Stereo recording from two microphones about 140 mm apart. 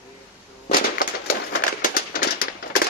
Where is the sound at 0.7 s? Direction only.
85° left.